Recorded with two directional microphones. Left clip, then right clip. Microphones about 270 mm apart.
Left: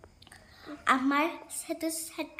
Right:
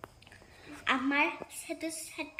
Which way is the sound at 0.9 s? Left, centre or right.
Centre.